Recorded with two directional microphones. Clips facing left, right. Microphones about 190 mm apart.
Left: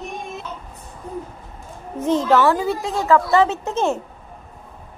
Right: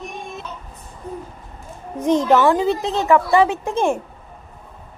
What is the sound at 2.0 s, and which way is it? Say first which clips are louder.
A woman's voice: right 1 dB; 15° right (ahead or behind).